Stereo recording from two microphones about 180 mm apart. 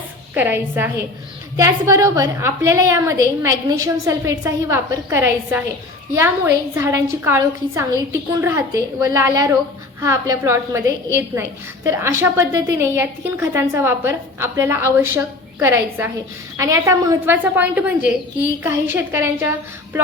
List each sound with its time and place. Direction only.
0.3 s a woman's voice: 10° right (ahead or behind)